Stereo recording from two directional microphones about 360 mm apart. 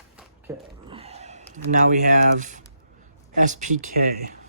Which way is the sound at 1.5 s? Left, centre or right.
Right.